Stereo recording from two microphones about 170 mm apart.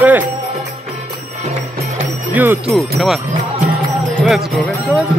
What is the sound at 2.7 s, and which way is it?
Speech, centre (ahead or behind).